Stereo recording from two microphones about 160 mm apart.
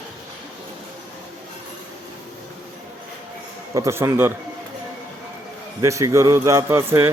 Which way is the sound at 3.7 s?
15° right (ahead or behind).